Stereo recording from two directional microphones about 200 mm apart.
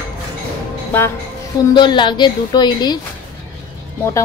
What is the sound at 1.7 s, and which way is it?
A woman's voice, 20° left (ahead or behind).